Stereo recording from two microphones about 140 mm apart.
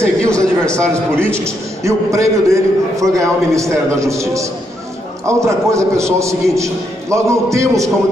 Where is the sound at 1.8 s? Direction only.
20° right (ahead or behind).